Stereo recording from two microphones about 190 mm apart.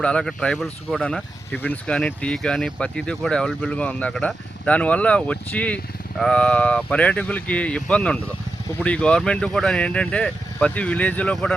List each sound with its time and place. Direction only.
0.0 s speech: 5° left (ahead or behind)